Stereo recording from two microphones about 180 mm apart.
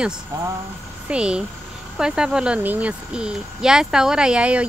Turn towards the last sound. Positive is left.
turn(degrees=-5)  # may be behind; listen again after turning